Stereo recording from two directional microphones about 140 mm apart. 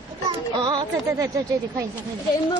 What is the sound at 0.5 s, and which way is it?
Speech, 35° right (ahead or behind).